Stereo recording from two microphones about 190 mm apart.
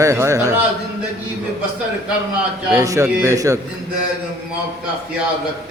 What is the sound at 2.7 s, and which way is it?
Speech, 15° right (ahead or behind).